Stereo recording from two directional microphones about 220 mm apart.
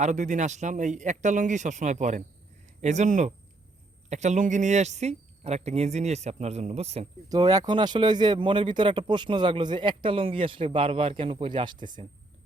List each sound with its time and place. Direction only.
0.0 s speech: 35° right (ahead or behind)
7.3 s speech: 15° right (ahead or behind)